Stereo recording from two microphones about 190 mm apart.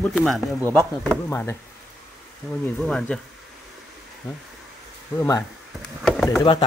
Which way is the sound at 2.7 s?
5° left (ahead or behind).